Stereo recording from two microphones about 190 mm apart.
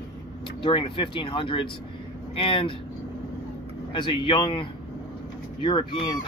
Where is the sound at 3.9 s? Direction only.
25° left (ahead or behind).